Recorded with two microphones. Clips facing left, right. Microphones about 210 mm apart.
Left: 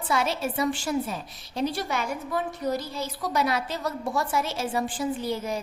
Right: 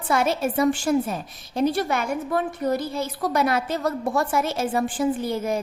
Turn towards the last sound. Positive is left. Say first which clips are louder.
# right 4 dB
turn(degrees=-50)  # may be behind; listen again after turning